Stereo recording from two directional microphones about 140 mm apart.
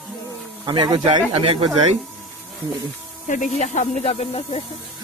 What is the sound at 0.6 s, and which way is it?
Speech, 35° right (ahead or behind).